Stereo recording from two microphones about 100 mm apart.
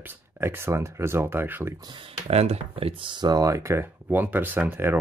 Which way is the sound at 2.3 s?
90° right.